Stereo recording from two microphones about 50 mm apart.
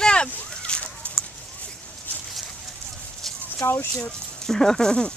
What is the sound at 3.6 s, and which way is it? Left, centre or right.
Speech, left.